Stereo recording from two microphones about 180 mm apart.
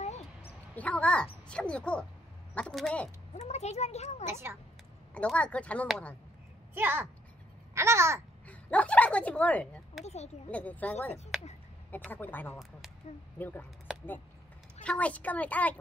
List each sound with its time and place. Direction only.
0.0 s a sound: 35° left (ahead or behind)
0.7 s speech: 5° left (ahead or behind)
3.3 s a child's voice: 40° left (ahead or behind)
4.3 s speech: 15° right (ahead or behind)
5.1 s speech: 5° left (ahead or behind)
6.7 s a child's voice: 10° right (ahead or behind)
7.7 s babbling: 15° right (ahead or behind)
8.5 s a sound: 5° left (ahead or behind)
10.0 s a child's voice: 35° left (ahead or behind)
10.5 s speech: 10° left (ahead or behind)
14.8 s speech: 5° left (ahead or behind)